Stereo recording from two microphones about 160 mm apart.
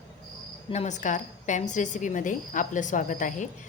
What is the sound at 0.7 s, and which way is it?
A woman's voice, 45° left (ahead or behind).